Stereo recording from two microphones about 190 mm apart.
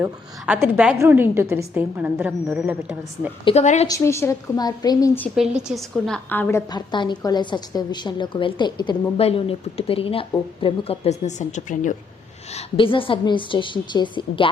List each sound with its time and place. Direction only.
0.0 s a woman's voice: 10° right (ahead or behind)
3.4 s a woman's voice: 35° left (ahead or behind)
3.8 s a woman's voice: 15° left (ahead or behind)
5.4 s a woman's voice: 5° right (ahead or behind)
6.2 s a woman's voice: 10° left (ahead or behind)
6.7 s a woman's voice: 25° left (ahead or behind); by 11.9 s 40° left (ahead or behind)
12.5 s a woman's voice: 30° left (ahead or behind)